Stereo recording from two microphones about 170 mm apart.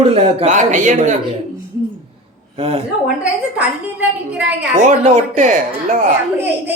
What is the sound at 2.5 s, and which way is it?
Speech, 35° right (ahead or behind).